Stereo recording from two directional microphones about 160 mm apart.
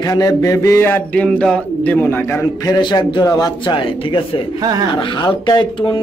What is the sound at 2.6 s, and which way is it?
A man's voice, 25° left (ahead or behind).